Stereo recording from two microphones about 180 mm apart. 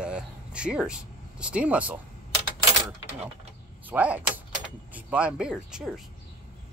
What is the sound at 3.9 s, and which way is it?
Speech, 10° right (ahead or behind).